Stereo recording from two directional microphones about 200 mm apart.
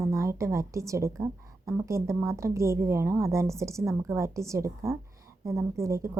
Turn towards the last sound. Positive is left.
turn(degrees=-15)  # may be behind; listen again after turning